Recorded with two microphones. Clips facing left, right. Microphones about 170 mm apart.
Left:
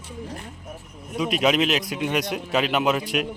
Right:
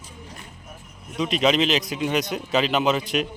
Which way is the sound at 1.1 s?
5° left (ahead or behind).